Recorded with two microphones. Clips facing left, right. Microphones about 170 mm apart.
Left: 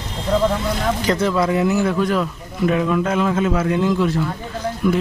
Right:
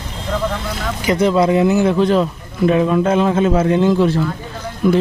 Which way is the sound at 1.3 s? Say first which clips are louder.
Right 7 dB; 20° right (ahead or behind).